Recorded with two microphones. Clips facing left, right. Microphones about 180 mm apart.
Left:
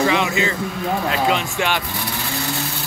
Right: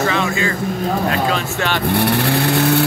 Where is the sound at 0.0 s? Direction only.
15° left (ahead or behind).